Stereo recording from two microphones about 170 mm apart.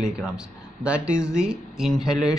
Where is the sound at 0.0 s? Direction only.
5° right (ahead or behind).